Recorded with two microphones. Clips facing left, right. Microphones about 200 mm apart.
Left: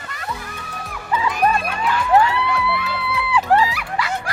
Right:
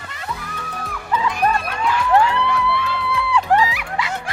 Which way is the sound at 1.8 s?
5° left (ahead or behind).